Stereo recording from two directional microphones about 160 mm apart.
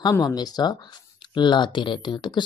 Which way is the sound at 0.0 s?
25° left (ahead or behind).